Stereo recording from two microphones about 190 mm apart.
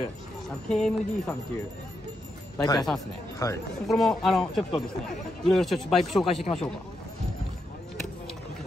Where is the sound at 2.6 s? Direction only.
20° left (ahead or behind).